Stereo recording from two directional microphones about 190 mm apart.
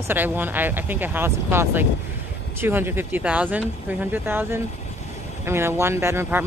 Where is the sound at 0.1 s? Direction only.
10° right (ahead or behind).